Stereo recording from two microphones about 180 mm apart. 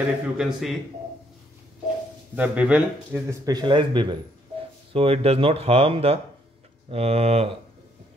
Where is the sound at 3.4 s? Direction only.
25° right (ahead or behind).